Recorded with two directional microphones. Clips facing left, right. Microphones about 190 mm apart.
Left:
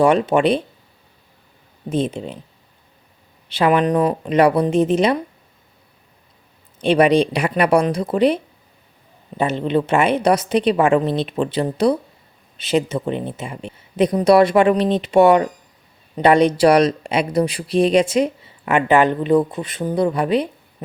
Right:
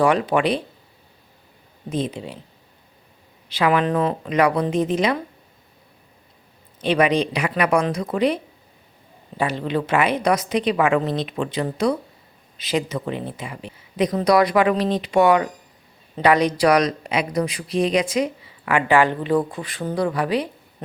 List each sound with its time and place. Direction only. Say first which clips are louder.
0.0 s speech: left 4 dB; 25° left (ahead or behind)
1.9 s speech: left 4 dB; 25° left (ahead or behind)
3.7 s speech: left 3 dB; 20° left (ahead or behind)
4.3 s speech: left 5 dB; 30° left (ahead or behind)
6.8 s speech: left 5 dB; 30° left (ahead or behind)
9.4 s speech: left 4 dB; 25° left (ahead or behind)